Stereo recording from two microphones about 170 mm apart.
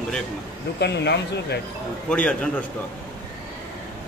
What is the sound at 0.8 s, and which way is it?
Speech, 80° left.